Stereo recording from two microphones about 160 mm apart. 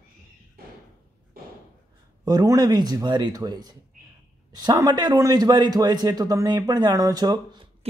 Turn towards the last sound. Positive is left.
turn(degrees=-25)  # may be behind; listen again after turning